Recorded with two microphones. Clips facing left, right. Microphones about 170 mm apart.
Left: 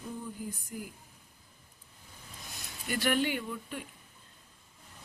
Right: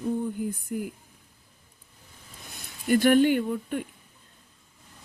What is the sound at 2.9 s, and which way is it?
Speech, 45° right (ahead or behind).